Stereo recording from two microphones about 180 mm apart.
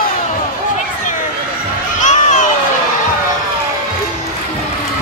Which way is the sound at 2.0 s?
45° left (ahead or behind).